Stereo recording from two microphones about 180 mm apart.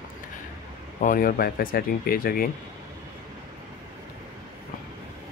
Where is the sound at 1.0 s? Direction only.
50° left (ahead or behind).